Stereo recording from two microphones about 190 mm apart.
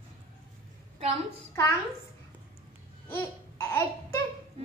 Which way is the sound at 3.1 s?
10° left (ahead or behind).